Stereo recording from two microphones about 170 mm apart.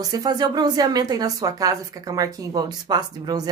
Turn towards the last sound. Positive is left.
turn(degrees=-25)  # may be behind; listen again after turning